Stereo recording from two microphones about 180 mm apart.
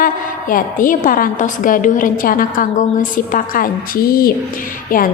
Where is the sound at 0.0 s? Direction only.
50° left (ahead or behind).